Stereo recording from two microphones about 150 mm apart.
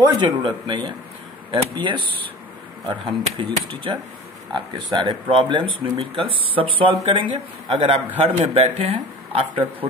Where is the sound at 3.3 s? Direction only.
35° right (ahead or behind).